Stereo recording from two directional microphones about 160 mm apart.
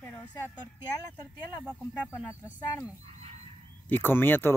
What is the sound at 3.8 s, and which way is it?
Speech, 10° left (ahead or behind).